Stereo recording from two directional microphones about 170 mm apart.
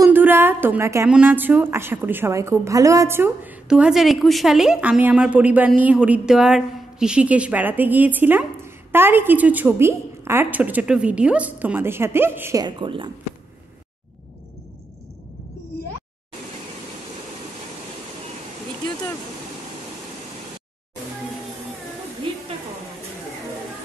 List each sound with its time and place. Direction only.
0.0 s a woman's voice: 10° right (ahead or behind)
12.6 s a woman's voice: 30° right (ahead or behind)